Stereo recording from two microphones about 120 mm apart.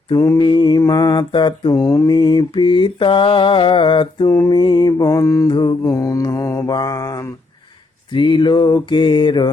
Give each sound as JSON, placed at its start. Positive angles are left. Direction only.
{"t": 0.1, "sound": "mantra", "side_deg": 35}
{"t": 5.5, "sound": "mantra", "side_deg": 40}